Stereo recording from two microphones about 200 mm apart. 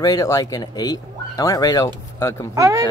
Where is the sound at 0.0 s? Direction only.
15° left (ahead or behind).